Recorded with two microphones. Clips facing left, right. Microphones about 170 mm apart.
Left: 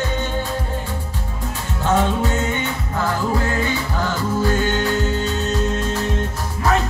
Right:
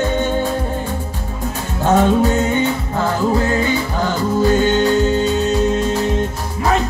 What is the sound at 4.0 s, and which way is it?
Music, 15° right (ahead or behind).